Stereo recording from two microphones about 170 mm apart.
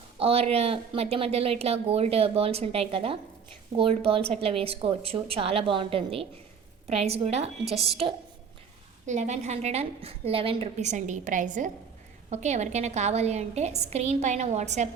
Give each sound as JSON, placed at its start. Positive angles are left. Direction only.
{"t": 0.2, "sound": "a woman's voice", "side_deg": -35}
{"t": 9.0, "sound": "a woman's voice", "side_deg": -45}